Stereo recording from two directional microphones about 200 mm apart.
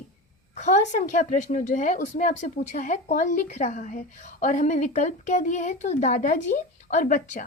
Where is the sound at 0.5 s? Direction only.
35° left (ahead or behind).